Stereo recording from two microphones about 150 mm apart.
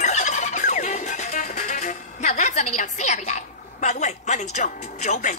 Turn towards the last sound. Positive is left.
turn(degrees=50)  # may be behind; listen again after turning